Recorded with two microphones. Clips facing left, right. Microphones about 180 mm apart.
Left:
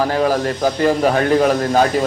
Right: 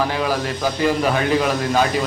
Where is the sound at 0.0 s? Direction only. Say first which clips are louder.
Left 4 dB; 45° left (ahead or behind).